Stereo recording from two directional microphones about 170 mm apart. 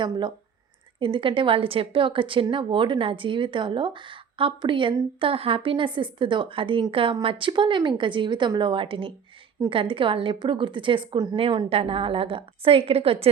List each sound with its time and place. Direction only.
0.0 s a woman's voice: 25° right (ahead or behind)